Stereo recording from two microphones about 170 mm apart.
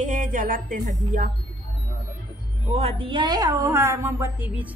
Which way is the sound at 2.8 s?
35° right (ahead or behind).